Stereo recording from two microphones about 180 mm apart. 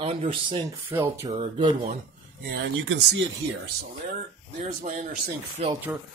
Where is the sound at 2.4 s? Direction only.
80° right.